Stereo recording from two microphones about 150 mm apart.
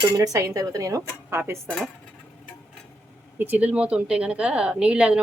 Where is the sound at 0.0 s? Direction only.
20° right (ahead or behind).